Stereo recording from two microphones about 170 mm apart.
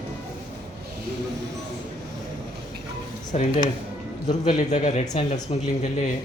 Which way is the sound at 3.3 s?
40° left (ahead or behind).